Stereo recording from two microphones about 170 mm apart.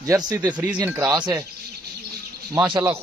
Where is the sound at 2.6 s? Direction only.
25° right (ahead or behind).